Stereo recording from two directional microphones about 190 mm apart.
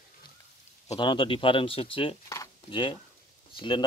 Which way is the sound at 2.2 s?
15° left (ahead or behind).